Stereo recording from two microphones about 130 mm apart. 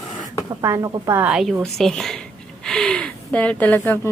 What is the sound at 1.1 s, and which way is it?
A woman's voice, 10° right (ahead or behind).